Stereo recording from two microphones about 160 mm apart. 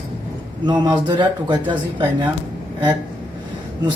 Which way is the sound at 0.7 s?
25° right (ahead or behind).